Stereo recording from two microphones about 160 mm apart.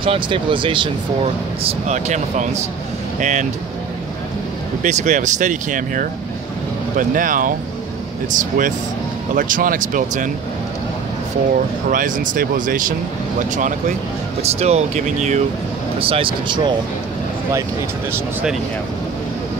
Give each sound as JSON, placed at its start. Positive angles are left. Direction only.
{"t": 0.0, "sound": "speech", "side_deg": -35}
{"t": 4.8, "sound": "speech", "side_deg": -50}
{"t": 11.9, "sound": "speech", "side_deg": -60}
{"t": 14.4, "sound": "speech", "side_deg": -40}
{"t": 16.0, "sound": "speech", "side_deg": -35}